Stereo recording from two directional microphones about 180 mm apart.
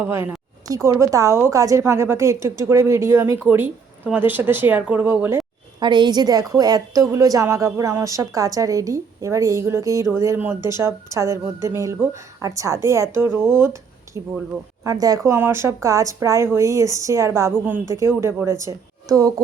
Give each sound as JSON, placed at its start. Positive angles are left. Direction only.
{"t": 0.0, "sound": "a woman's voice", "side_deg": -10}
{"t": 5.8, "sound": "a woman's voice", "side_deg": -25}